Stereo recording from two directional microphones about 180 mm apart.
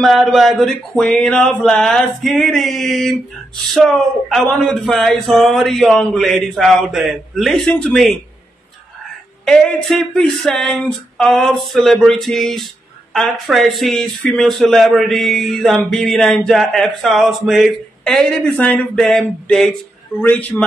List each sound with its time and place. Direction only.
0.0 s speech: centre (ahead or behind)
9.4 s a man's voice: centre (ahead or behind)